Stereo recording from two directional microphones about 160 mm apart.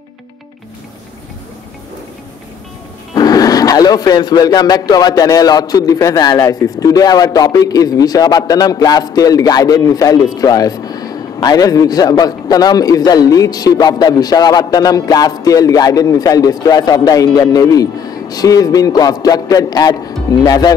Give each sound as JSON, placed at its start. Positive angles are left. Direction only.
{"t": 3.2, "sound": "speech", "side_deg": 25}